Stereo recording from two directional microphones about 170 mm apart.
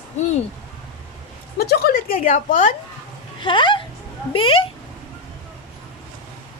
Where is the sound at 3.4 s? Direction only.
30° left (ahead or behind).